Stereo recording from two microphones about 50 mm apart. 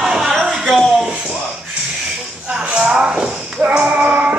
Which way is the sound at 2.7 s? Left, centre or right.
Centre.